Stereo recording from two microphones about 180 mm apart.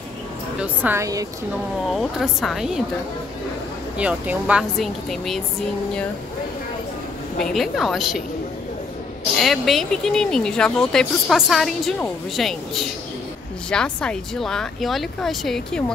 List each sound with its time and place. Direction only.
0.6 s a woman's voice: 10° right (ahead or behind)
1.9 s speech: centre (ahead or behind)
4.0 s speech: 5° right (ahead or behind)
7.3 s speech: centre (ahead or behind)
9.4 s speech: centre (ahead or behind)